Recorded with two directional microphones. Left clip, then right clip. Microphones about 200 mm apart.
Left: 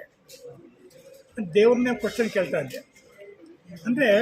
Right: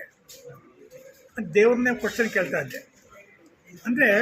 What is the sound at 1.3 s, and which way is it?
Speech, 5° left (ahead or behind).